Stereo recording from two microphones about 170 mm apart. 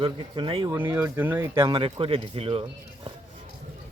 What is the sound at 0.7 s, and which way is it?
Speech, 10° right (ahead or behind).